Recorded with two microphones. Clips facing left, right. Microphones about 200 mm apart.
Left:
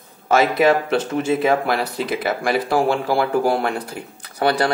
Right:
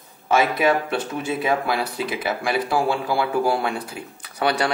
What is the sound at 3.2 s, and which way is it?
Speech, 50° left (ahead or behind).